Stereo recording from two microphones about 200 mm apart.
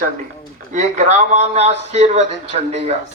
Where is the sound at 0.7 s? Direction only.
35° right (ahead or behind).